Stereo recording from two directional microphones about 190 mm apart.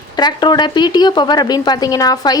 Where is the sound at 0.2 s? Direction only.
20° left (ahead or behind).